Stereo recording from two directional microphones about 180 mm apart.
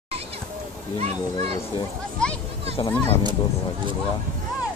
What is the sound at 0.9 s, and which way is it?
Speech, 35° right (ahead or behind).